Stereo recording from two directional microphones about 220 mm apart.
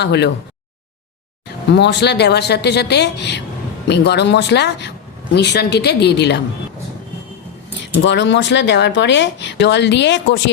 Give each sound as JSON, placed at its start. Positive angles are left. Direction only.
{"t": 0.0, "sound": "speech", "side_deg": 50}
{"t": 1.6, "sound": "speech", "side_deg": 50}
{"t": 7.9, "sound": "speech", "side_deg": 55}